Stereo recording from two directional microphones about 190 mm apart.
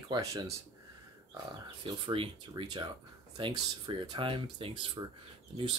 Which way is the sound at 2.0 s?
25° right (ahead or behind).